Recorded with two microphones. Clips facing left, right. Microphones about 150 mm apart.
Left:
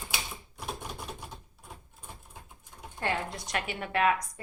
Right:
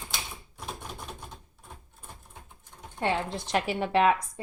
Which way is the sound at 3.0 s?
30° right (ahead or behind).